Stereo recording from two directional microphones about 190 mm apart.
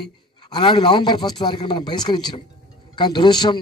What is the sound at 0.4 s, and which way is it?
A man's voice, 25° left (ahead or behind).